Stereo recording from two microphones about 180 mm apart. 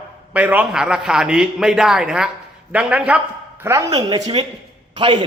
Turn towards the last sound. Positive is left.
turn(degrees=-25)  # may be behind; listen again after turning